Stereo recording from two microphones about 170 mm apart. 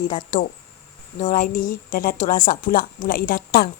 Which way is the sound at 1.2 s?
50° left (ahead or behind).